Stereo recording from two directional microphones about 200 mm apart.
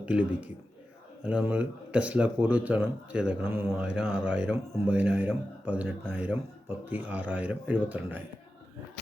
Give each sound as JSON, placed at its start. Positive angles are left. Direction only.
{"t": 0.0, "sound": "a man's voice", "side_deg": -5}